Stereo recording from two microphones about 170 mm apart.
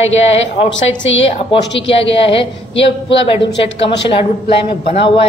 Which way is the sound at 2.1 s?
35° left (ahead or behind).